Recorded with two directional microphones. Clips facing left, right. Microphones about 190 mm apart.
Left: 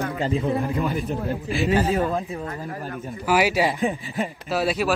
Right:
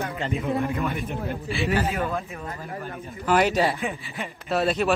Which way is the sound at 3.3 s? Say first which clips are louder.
Even; 5° left (ahead or behind).